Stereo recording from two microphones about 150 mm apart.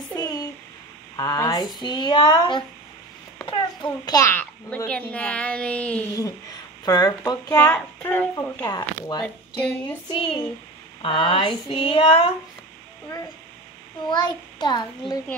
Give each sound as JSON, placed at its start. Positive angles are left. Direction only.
{"t": 0.1, "sound": "a sound", "side_deg": 25}
{"t": 1.1, "sound": "a child's voice", "side_deg": 25}
{"t": 6.8, "sound": "speech", "side_deg": 25}
{"t": 8.6, "sound": "speech", "side_deg": 25}
{"t": 10.0, "sound": "speech", "side_deg": 35}
{"t": 14.0, "sound": "speech", "side_deg": 30}